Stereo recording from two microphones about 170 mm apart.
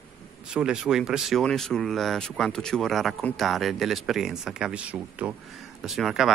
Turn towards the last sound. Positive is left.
turn(degrees=0)  # may be behind; listen again after turning